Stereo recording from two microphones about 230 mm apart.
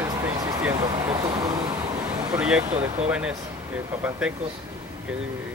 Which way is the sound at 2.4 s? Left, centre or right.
Centre.